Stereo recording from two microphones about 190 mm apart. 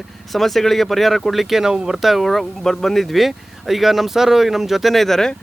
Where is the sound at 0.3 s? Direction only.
Centre (ahead or behind).